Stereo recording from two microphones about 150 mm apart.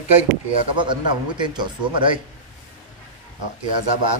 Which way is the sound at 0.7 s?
30° right (ahead or behind).